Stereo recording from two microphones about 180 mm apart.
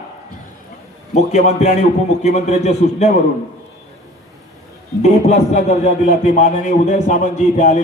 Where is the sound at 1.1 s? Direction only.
40° left (ahead or behind).